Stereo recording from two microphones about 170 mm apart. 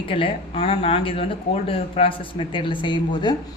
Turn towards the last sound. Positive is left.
turn(degrees=25)  # may be behind; listen again after turning